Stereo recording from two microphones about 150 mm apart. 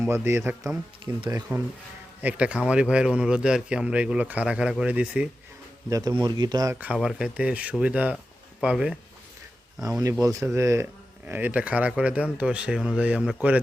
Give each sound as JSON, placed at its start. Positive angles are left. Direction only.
{"t": 0.1, "sound": "speech", "side_deg": -15}
{"t": 1.2, "sound": "speech", "side_deg": -30}
{"t": 2.2, "sound": "speech", "side_deg": -5}
{"t": 5.9, "sound": "speech", "side_deg": -25}
{"t": 6.9, "sound": "speech", "side_deg": 0}
{"t": 10.0, "sound": "speech", "side_deg": -25}